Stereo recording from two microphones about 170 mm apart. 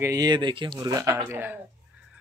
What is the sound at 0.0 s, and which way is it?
Speech, 20° right (ahead or behind).